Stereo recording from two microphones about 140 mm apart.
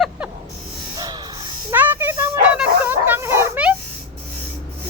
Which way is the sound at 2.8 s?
15° right (ahead or behind).